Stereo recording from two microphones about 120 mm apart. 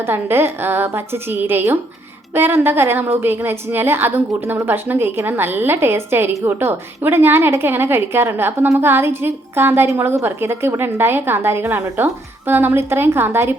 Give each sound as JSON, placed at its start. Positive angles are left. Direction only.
{"t": 0.0, "sound": "a woman's voice", "side_deg": -20}